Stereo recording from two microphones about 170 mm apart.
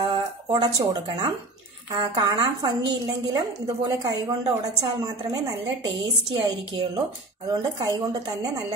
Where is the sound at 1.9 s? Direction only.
25° right (ahead or behind).